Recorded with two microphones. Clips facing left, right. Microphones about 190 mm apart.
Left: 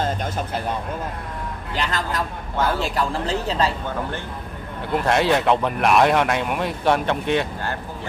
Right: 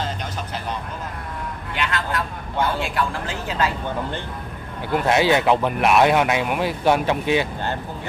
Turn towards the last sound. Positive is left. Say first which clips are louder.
# right 1 dB
turn(degrees=-5)  # may be behind; listen again after turning